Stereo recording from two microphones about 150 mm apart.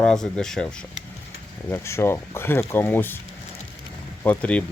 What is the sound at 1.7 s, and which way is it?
Speech, 20° left (ahead or behind).